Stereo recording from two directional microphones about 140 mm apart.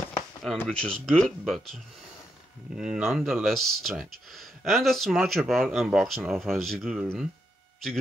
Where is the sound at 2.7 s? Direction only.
5° right (ahead or behind).